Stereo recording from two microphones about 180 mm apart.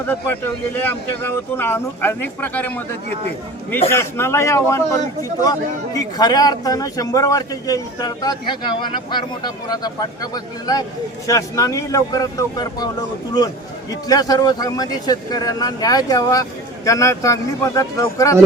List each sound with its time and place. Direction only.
0.1 s speech: 10° left (ahead or behind)